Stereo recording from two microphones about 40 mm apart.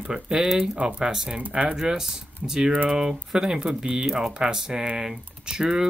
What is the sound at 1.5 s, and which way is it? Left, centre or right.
Speech, right.